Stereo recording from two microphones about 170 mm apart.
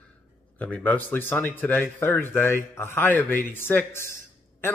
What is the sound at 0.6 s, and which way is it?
Speech, 10° left (ahead or behind).